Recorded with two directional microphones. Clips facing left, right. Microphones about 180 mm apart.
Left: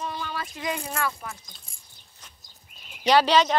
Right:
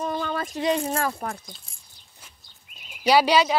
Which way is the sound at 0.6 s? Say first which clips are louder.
Right 6 dB; 35° right (ahead or behind).